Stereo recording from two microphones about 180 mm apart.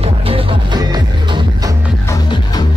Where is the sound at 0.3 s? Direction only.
25° right (ahead or behind).